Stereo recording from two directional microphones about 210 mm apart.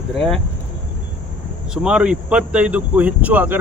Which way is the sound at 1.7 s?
5° right (ahead or behind).